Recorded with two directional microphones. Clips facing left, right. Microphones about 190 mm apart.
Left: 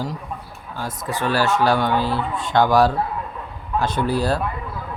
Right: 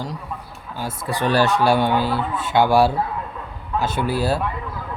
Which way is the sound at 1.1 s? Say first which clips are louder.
Right 2 dB; 20° right (ahead or behind).